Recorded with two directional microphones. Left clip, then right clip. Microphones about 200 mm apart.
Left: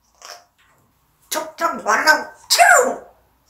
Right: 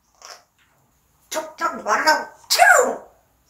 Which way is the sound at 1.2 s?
20° left (ahead or behind).